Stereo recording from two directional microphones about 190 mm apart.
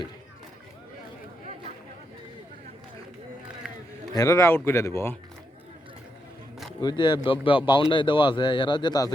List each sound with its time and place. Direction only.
4.1 s speech: 15° left (ahead or behind)
6.8 s speech: 25° left (ahead or behind)